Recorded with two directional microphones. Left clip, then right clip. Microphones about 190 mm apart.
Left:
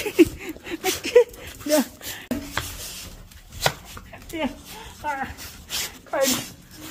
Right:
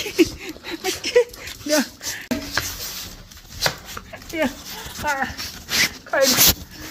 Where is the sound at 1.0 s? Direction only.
35° left (ahead or behind).